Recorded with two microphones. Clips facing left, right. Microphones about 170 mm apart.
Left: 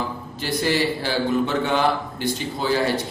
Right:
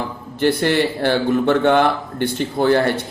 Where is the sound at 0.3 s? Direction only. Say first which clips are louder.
Right 6 dB; 60° right (ahead or behind).